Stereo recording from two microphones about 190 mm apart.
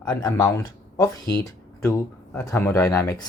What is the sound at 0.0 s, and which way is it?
Speech, 20° left (ahead or behind).